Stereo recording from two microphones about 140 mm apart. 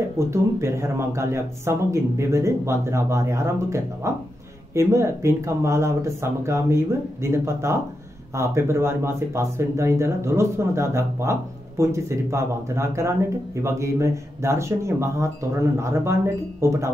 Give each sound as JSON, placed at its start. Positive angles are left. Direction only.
{"t": 0.3, "sound": "speech", "side_deg": -20}